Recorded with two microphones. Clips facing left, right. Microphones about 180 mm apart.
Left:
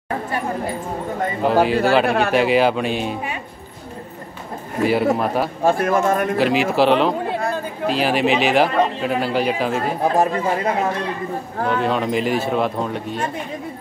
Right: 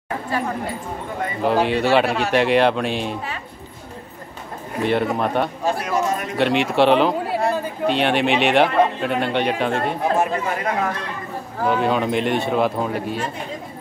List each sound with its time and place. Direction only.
1.4 s speech: centre (ahead or behind)
2.0 s a man's voice: 55° left (ahead or behind)
2.3 s speech: centre (ahead or behind)
4.8 s speech: 5° left (ahead or behind)
5.7 s speech: 50° left (ahead or behind)
6.3 s speech: centre (ahead or behind)
10.1 s speech: 30° left (ahead or behind)
11.6 s speech: centre (ahead or behind)